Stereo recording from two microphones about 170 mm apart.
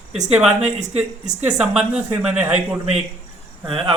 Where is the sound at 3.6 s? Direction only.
30° right (ahead or behind).